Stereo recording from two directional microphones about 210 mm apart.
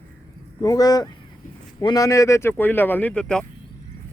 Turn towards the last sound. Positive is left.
turn(degrees=5)  # may be behind; listen again after turning